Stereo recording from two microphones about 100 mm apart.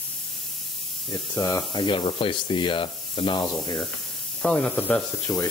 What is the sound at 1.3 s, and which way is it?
Speech, 30° left (ahead or behind).